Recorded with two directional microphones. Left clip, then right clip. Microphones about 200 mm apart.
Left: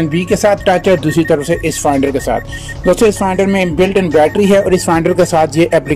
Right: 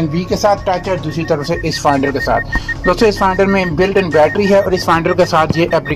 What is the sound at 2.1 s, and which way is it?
Speech, 20° left (ahead or behind).